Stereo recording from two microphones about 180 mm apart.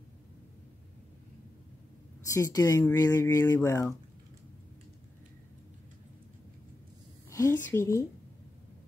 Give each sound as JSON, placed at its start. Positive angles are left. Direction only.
{"t": 2.2, "sound": "speech", "side_deg": 20}
{"t": 7.2, "sound": "a woman's voice", "side_deg": 15}